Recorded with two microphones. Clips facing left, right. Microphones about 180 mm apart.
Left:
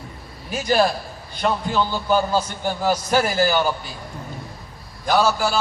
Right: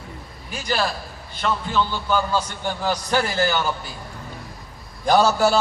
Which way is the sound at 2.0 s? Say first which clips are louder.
Left 5 dB; 40° left (ahead or behind).